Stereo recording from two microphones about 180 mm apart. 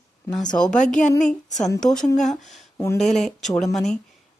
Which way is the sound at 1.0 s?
40° left (ahead or behind).